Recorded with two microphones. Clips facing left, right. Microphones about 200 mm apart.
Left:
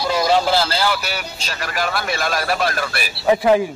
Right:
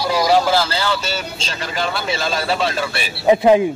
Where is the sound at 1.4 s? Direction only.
25° right (ahead or behind).